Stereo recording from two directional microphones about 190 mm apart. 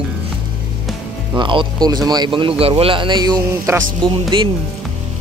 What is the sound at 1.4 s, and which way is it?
Speech, 25° right (ahead or behind).